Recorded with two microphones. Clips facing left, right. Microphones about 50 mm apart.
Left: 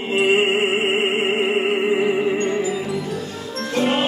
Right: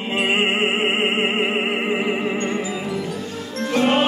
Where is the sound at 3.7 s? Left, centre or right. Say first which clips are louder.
Right 2 dB; right.